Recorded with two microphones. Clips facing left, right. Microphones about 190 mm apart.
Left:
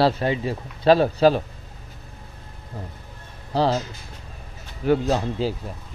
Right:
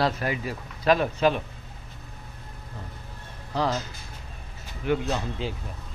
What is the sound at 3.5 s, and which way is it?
Speech, 30° left (ahead or behind).